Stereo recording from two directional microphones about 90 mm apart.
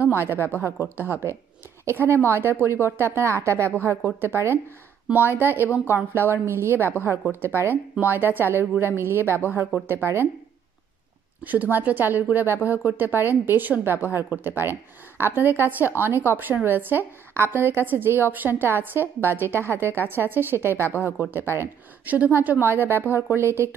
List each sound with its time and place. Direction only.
0.0 s a woman's voice: 25° right (ahead or behind)
11.4 s a woman's voice: 20° right (ahead or behind)